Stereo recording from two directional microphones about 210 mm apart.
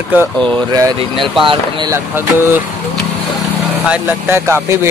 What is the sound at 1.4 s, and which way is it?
Speech, 25° right (ahead or behind).